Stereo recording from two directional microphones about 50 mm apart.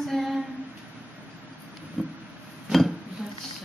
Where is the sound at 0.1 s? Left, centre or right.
Centre.